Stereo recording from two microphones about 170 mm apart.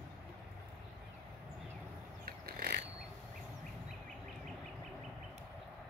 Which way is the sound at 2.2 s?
60° right (ahead or behind).